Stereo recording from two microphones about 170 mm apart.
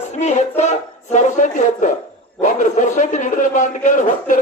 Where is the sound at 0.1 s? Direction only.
45° left (ahead or behind).